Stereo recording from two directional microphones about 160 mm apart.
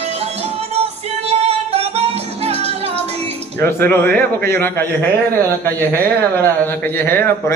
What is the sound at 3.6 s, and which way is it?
A man's voice, 15° left (ahead or behind).